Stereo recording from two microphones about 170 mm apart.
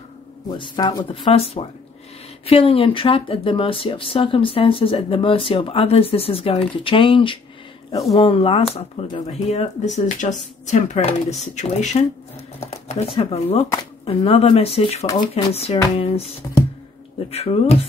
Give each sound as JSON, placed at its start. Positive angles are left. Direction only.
{"t": 0.5, "sound": "speech", "side_deg": 25}
{"t": 15.0, "sound": "speech", "side_deg": 25}
{"t": 16.4, "sound": "a sound", "side_deg": 20}
{"t": 17.3, "sound": "speech", "side_deg": 35}